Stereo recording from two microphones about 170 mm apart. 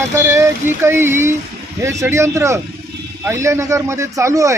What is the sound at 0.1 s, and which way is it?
A man's voice, 15° right (ahead or behind).